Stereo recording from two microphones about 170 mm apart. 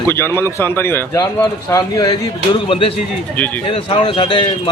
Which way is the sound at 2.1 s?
30° left (ahead or behind).